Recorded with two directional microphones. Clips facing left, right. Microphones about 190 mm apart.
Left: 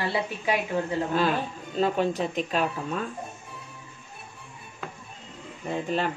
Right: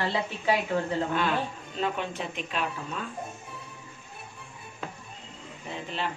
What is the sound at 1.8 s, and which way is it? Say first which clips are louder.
Speech: left 6 dB; 40° left (ahead or behind).